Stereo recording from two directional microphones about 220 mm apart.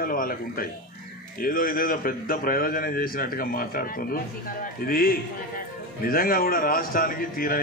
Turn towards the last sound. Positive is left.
turn(degrees=40)  # may be behind; listen again after turning